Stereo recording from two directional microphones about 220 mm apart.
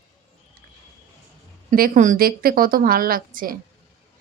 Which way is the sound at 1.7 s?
40° right (ahead or behind).